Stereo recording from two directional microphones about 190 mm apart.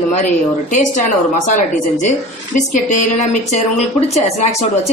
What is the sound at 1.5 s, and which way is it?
Speech, 40° left (ahead or behind).